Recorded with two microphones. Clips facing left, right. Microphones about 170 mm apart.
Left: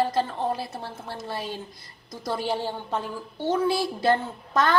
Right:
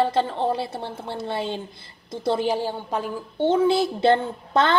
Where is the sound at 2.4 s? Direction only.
15° right (ahead or behind).